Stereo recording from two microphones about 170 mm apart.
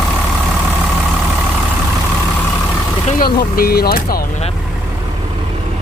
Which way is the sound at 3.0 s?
60° left (ahead or behind).